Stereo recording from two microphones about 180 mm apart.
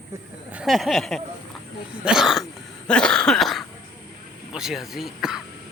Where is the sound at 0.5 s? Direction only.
Centre (ahead or behind).